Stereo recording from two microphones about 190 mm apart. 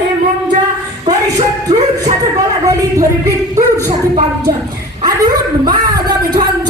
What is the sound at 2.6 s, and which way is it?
Speech, 15° right (ahead or behind).